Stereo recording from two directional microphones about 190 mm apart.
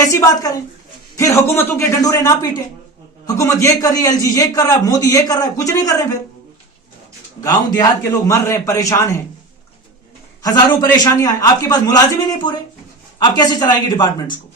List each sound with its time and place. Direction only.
0.1 s a man's voice: 20° left (ahead or behind)
7.4 s a man's voice: 20° left (ahead or behind)
10.4 s a man's voice: 20° left (ahead or behind)